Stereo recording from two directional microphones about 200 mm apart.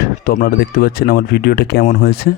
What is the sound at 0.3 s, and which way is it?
A man's voice, 45° left (ahead or behind).